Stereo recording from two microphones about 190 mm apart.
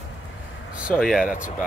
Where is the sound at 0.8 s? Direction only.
5° right (ahead or behind).